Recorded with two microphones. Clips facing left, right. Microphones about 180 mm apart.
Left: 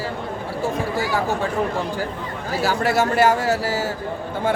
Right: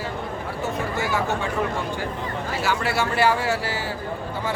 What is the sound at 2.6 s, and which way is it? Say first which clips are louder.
A man's voice: left 5 dB; 40° left (ahead or behind).